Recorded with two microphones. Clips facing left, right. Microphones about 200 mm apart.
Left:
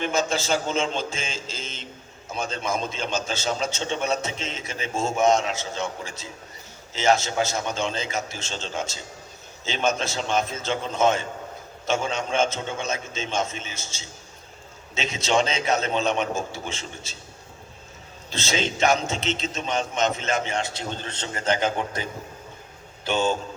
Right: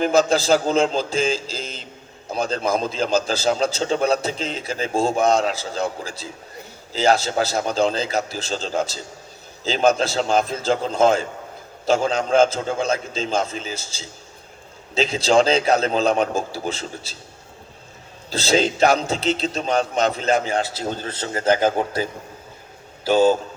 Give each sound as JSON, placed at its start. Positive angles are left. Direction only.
{"t": 0.0, "sound": "a man's voice", "side_deg": -35}
{"t": 18.3, "sound": "a man's voice", "side_deg": -35}
{"t": 23.0, "sound": "a man's voice", "side_deg": -10}